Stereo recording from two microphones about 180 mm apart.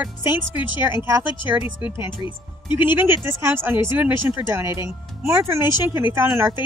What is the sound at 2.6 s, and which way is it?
Speech, 25° left (ahead or behind).